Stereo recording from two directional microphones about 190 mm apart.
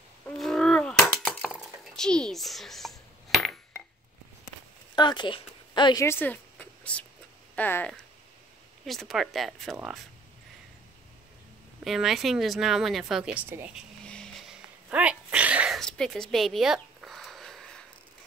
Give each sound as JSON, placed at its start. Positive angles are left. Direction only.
{"t": 0.3, "sound": "breaking", "side_deg": 5}
{"t": 4.9, "sound": "speech", "side_deg": 25}
{"t": 11.8, "sound": "speech", "side_deg": 0}
{"t": 14.0, "sound": "music", "side_deg": 5}
{"t": 14.9, "sound": "sneeze", "side_deg": -5}